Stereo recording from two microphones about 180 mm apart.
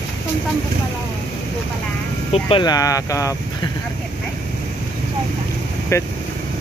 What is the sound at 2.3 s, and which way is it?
Speech, 25° left (ahead or behind).